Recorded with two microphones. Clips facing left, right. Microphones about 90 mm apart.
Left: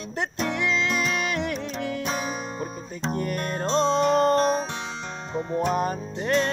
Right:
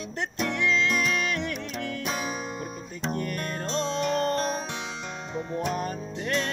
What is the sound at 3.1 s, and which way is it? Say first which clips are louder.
Music: left 3 dB; 15° left (ahead or behind).